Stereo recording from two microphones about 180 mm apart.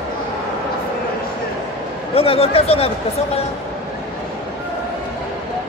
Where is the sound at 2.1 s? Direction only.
30° left (ahead or behind).